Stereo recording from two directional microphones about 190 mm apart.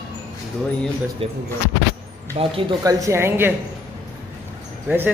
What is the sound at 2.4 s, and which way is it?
Speech, 25° right (ahead or behind).